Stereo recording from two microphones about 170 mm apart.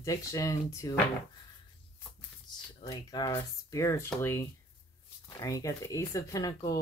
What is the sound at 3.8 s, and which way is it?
Speech, 15° left (ahead or behind).